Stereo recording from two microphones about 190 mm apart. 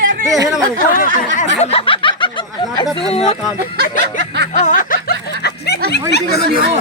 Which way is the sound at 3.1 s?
30° left (ahead or behind).